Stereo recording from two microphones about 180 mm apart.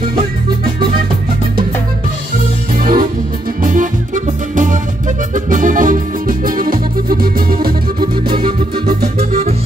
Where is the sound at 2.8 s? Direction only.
55° right (ahead or behind).